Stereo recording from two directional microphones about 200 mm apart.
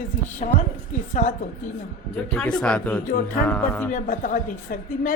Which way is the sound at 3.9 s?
40° left (ahead or behind).